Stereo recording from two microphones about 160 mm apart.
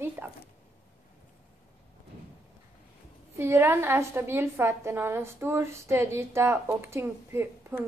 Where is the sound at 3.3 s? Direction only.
15° right (ahead or behind).